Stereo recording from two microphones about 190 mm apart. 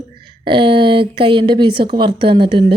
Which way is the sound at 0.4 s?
25° right (ahead or behind).